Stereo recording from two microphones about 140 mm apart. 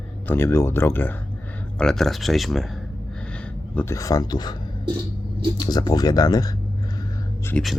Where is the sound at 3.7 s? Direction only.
20° left (ahead or behind).